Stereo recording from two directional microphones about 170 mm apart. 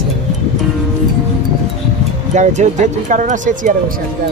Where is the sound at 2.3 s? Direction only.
45° right (ahead or behind).